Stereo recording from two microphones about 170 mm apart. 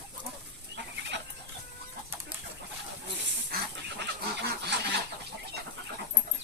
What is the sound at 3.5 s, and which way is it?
Duck, 85° right.